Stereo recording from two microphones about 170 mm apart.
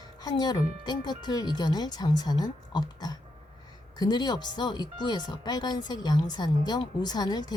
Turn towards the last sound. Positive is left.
turn(degrees=25)  # may be behind; listen again after turning